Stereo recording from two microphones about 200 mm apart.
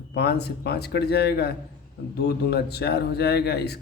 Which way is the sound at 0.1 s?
55° left (ahead or behind).